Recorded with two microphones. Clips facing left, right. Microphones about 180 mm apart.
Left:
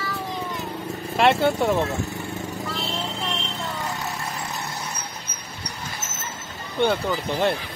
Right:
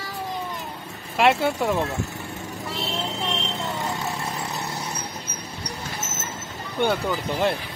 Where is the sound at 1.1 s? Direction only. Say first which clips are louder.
Left 1 dB; 5° right (ahead or behind).